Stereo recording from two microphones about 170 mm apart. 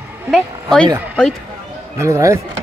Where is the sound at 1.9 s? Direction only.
15° right (ahead or behind).